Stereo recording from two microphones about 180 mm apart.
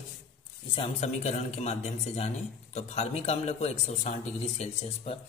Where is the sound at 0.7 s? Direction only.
35° left (ahead or behind).